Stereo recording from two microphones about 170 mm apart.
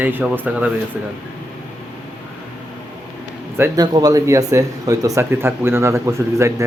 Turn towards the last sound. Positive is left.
turn(degrees=-15)  # may be behind; listen again after turning